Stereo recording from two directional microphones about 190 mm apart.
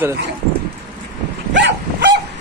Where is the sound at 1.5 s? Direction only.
65° right (ahead or behind).